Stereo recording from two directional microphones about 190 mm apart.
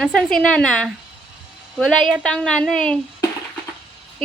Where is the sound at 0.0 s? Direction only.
5° left (ahead or behind).